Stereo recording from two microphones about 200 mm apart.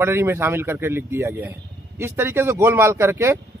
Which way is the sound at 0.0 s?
10° right (ahead or behind).